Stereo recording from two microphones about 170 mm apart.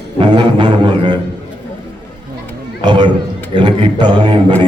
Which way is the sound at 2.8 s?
25° right (ahead or behind).